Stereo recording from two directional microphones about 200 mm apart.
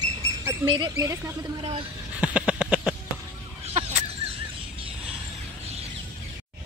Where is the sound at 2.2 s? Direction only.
5° right (ahead or behind).